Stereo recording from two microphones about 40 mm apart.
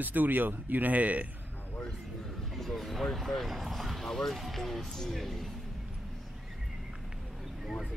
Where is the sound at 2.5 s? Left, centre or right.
Centre.